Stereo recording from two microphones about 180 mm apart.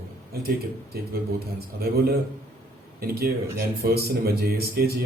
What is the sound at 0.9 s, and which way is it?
Speech, 55° right (ahead or behind).